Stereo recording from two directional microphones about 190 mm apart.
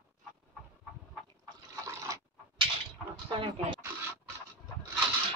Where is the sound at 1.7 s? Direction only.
15° right (ahead or behind).